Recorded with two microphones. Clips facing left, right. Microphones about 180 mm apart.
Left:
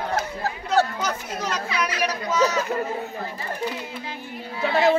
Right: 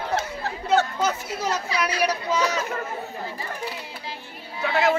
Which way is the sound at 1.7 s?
35° right (ahead or behind).